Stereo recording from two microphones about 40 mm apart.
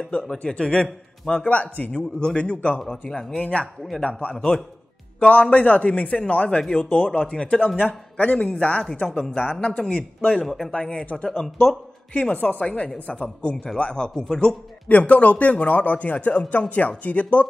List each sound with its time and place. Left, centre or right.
0.5 s a man's voice: left
1.3 s a man's voice: left
1.9 s a man's voice: left
3.1 s speech: centre
4.0 s a man's voice: left
9.0 s speech: centre
9.4 s a man's voice: left
10.4 s speech: centre
10.7 s a man's voice: left
12.1 s a man's voice: left
14.1 s speech: centre
14.9 s a man's voice: left